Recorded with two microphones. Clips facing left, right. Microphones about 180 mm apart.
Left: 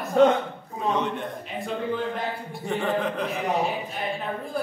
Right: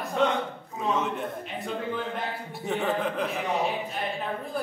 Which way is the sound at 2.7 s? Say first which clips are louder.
Left 2 dB; centre (ahead or behind).